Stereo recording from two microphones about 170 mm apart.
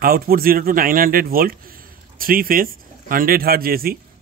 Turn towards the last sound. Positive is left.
turn(degrees=-60)  # may be behind; listen again after turning